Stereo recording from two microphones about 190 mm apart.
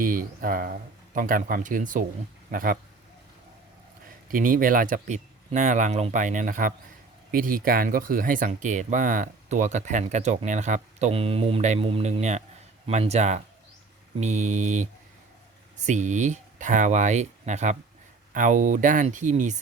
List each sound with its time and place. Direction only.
0.0 s speech: 45° right (ahead or behind)
4.3 s speech: 45° right (ahead or behind)